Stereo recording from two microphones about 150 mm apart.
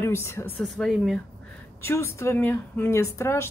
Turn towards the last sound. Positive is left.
turn(degrees=20)  # may be behind; listen again after turning